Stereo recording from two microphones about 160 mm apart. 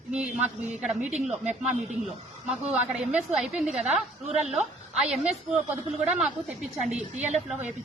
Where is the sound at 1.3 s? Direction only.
45° right (ahead or behind).